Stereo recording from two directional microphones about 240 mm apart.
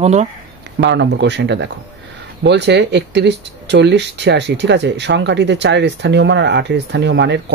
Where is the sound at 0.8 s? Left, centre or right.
Right.